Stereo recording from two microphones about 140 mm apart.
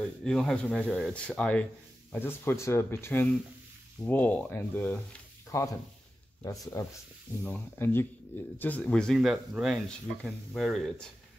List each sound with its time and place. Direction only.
0.0 s speech: 5° left (ahead or behind); by 6.9 s 25° left (ahead or behind)
7.4 s speech: 15° left (ahead or behind)